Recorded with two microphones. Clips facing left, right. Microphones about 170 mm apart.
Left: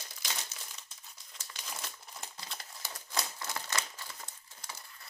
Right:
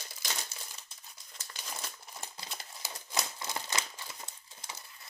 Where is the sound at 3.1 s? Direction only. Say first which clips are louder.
Right 1 dB; 20° right (ahead or behind).